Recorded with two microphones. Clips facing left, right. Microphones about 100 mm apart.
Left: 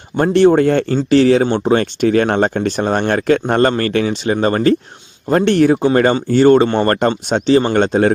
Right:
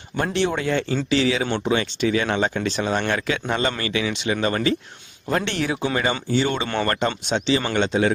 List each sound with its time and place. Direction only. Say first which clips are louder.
0.2 s speech: left 12 dB; 45° left (ahead or behind)
1.5 s speech: left 7 dB; 35° left (ahead or behind)
1.7 s speech: left 7 dB; 50° left (ahead or behind)